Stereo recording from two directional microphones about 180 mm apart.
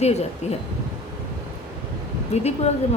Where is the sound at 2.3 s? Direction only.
35° left (ahead or behind).